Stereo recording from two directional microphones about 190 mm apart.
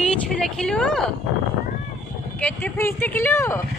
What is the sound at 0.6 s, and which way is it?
Speech, 5° left (ahead or behind).